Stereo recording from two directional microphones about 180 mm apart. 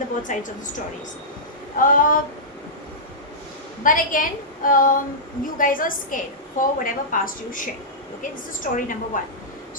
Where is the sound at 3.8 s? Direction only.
50° left (ahead or behind).